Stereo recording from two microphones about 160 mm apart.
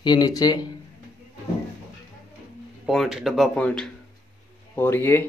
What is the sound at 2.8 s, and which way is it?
Speech, centre (ahead or behind).